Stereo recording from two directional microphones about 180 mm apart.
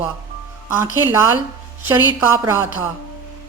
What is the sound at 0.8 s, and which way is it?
A woman's voice, 15° right (ahead or behind).